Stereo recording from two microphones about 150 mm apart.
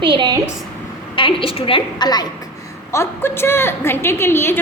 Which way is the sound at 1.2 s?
35° left (ahead or behind).